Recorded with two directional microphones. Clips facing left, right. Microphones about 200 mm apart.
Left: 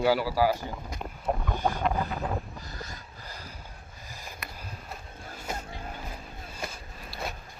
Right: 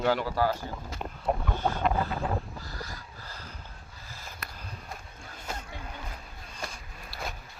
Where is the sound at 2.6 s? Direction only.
20° left (ahead or behind).